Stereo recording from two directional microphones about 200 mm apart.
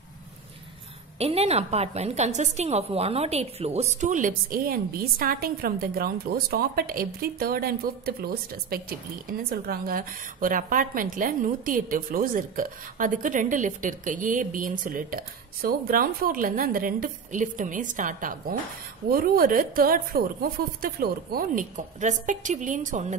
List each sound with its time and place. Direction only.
1.1 s a woman's voice: 30° right (ahead or behind)